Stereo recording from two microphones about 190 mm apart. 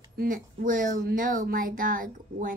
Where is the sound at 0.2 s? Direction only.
45° right (ahead or behind).